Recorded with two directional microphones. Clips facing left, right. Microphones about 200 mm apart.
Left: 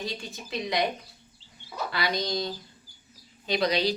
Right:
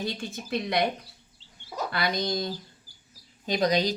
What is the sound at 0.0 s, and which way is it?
Speech, 55° right (ahead or behind).